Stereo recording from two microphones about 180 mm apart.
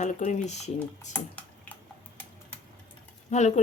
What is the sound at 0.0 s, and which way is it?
Speech, 45° left (ahead or behind).